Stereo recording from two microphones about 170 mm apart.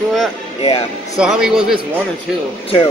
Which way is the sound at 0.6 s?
35° left (ahead or behind).